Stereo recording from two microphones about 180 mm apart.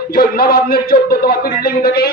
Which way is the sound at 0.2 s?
55° left (ahead or behind).